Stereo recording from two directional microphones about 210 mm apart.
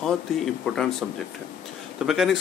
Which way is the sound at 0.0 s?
Centre (ahead or behind).